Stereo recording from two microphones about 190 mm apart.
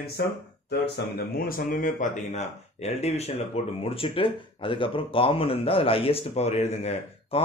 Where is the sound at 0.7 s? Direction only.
55° left (ahead or behind).